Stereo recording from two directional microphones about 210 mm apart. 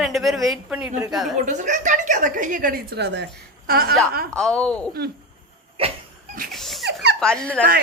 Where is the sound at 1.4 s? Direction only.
35° right (ahead or behind).